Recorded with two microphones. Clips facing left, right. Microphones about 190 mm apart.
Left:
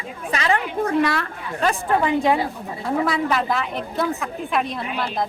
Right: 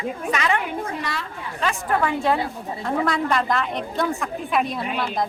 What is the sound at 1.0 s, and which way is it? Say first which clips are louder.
Speech: left 8 dB; 60° left (ahead or behind).